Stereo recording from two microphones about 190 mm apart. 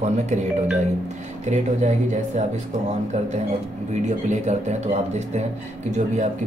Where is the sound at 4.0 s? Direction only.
40° right (ahead or behind).